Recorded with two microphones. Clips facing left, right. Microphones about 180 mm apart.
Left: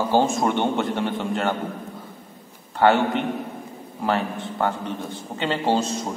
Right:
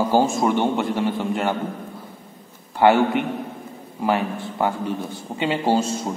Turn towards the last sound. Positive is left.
turn(degrees=-10)  # may be behind; listen again after turning